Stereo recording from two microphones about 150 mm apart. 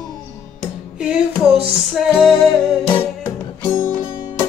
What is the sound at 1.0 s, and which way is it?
Music, 5° right (ahead or behind).